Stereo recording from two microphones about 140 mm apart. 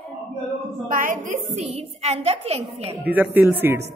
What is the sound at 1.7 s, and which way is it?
A woman's voice, 45° right (ahead or behind).